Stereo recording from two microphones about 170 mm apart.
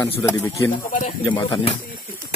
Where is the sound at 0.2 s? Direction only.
15° left (ahead or behind).